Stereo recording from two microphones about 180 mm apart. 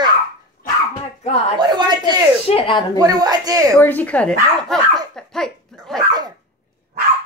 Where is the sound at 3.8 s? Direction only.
10° left (ahead or behind).